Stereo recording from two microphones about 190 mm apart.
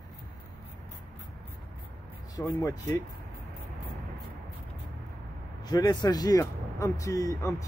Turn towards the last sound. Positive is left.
turn(degrees=15)  # may be behind; listen again after turning